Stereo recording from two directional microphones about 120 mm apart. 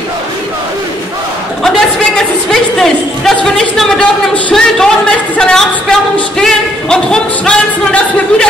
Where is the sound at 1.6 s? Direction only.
5° left (ahead or behind).